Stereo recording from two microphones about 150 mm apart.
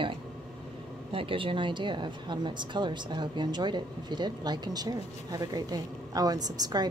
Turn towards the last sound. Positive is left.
turn(degrees=-25)  # may be behind; listen again after turning